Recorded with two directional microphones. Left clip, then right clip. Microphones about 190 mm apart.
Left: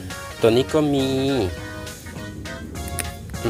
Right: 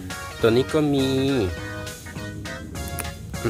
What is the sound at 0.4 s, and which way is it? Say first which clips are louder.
Speech: left 2 dB; 15° right (ahead or behind).